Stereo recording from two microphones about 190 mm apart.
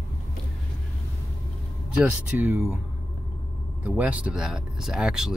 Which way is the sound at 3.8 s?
5° right (ahead or behind).